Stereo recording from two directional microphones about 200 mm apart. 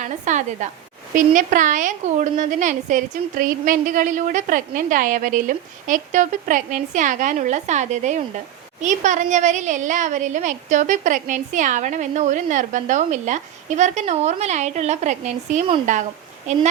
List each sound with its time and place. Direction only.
0.0 s a woman's voice: 35° right (ahead or behind)